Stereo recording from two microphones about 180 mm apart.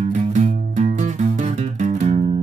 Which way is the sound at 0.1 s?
40° right (ahead or behind).